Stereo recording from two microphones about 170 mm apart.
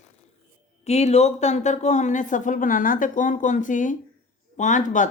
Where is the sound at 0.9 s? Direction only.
40° left (ahead or behind).